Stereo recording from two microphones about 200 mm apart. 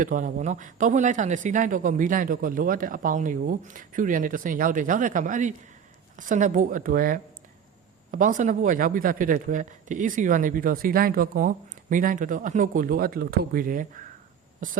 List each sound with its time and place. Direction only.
0.0 s speech: 40° right (ahead or behind)